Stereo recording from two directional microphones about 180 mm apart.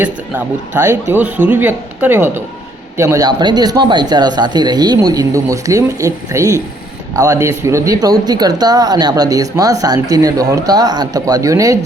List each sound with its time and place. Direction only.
0.0 s a man's voice: 10° right (ahead or behind)